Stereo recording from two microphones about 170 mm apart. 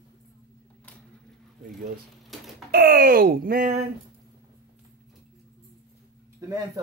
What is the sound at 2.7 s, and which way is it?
Speech, 60° right (ahead or behind).